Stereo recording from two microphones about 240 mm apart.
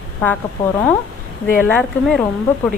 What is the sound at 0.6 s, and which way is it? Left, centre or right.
Speech, left.